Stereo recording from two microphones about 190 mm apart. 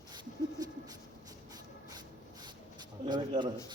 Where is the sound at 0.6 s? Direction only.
20° right (ahead or behind).